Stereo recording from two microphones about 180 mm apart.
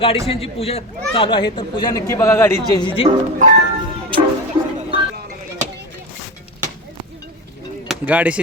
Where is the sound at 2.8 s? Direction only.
25° left (ahead or behind).